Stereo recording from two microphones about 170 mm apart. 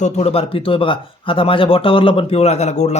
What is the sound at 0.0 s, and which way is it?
Speech, 40° left (ahead or behind).